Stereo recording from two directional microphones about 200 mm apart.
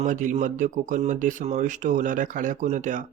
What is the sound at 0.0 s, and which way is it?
Speech, 40° right (ahead or behind).